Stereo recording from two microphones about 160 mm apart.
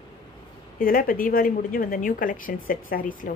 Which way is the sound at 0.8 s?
65° left (ahead or behind).